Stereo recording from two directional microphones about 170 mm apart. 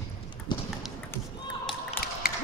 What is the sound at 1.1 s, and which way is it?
Basketball bounce, 15° left (ahead or behind).